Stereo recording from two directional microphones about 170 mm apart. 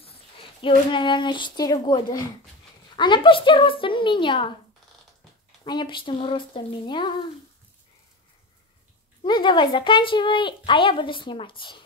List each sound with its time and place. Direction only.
0.6 s speech: 30° left (ahead or behind)
5.6 s speech: 30° left (ahead or behind)
9.2 s speech: 25° left (ahead or behind)